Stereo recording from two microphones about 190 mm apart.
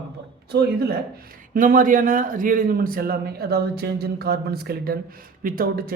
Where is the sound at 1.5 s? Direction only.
45° right (ahead or behind).